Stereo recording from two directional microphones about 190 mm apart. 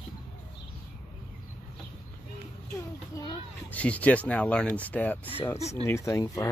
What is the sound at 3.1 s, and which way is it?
Speech, 20° left (ahead or behind).